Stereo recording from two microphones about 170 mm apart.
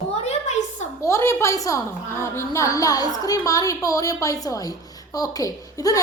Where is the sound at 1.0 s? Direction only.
15° left (ahead or behind).